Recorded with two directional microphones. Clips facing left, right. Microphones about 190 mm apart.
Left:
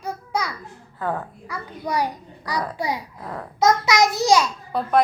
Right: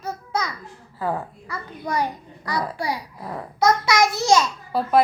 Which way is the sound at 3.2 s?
5° right (ahead or behind).